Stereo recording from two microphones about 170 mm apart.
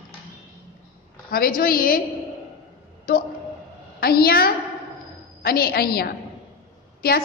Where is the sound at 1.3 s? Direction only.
60° left (ahead or behind).